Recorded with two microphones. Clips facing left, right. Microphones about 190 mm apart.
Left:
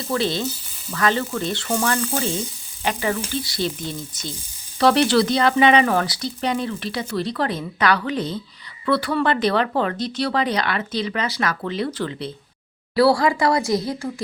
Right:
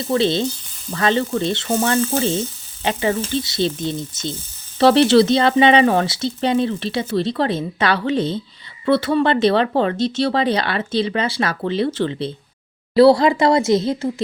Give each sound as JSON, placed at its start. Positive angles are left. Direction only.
{"t": 0.1, "sound": "speech", "side_deg": -25}